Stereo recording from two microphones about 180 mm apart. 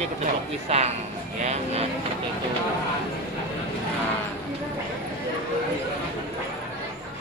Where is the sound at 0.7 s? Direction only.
35° right (ahead or behind).